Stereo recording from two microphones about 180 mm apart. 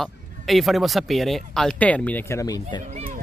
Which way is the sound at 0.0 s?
Centre (ahead or behind).